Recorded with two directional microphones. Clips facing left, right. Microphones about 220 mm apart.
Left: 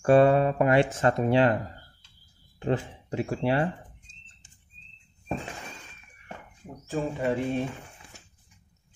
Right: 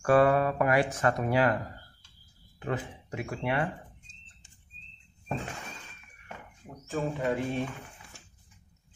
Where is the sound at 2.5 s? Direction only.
30° left (ahead or behind).